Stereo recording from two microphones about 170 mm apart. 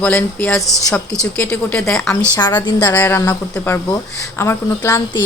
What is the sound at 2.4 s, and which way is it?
Speech, 25° left (ahead or behind).